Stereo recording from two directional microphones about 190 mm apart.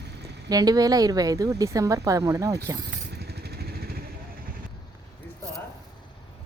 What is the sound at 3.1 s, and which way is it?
Vehicle, 55° right (ahead or behind).